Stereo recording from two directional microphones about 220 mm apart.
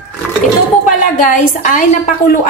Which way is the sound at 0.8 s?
35° left (ahead or behind).